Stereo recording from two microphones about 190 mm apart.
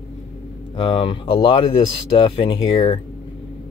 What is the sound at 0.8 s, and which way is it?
Speech, 30° left (ahead or behind).